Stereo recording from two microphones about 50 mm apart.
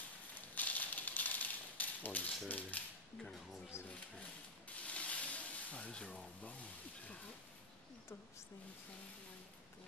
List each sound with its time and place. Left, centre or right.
0.6 s typewriter: left
3.7 s speech: left
4.6 s a sound: left